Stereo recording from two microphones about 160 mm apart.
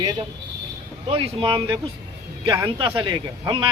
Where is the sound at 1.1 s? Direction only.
35° right (ahead or behind).